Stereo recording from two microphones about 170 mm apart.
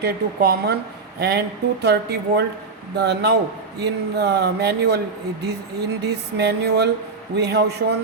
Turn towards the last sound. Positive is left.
turn(degrees=-75)  # may be behind; listen again after turning